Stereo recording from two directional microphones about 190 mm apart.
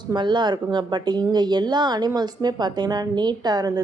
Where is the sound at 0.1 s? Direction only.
25° right (ahead or behind).